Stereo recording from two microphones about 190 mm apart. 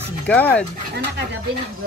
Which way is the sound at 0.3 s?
5° left (ahead or behind).